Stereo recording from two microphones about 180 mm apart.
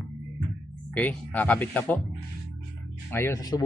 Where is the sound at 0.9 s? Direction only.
10° left (ahead or behind).